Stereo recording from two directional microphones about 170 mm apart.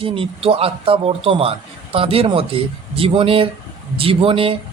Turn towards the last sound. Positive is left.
turn(degrees=-30)  # may be behind; listen again after turning